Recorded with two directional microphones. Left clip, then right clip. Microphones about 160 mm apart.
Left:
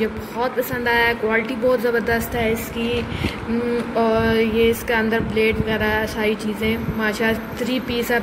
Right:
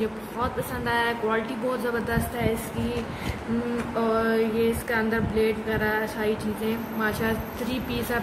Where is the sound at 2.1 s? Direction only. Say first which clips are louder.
Left 6 dB; 10° left (ahead or behind).